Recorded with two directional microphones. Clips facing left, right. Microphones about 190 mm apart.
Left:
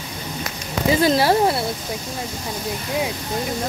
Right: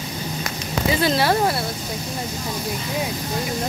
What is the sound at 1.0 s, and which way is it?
Speech, 40° left (ahead or behind).